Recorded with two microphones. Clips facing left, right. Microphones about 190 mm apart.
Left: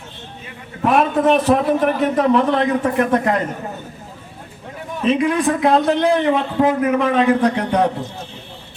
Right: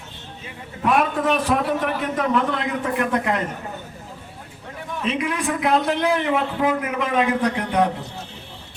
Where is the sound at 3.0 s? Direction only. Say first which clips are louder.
Left 4 dB; 45° left (ahead or behind).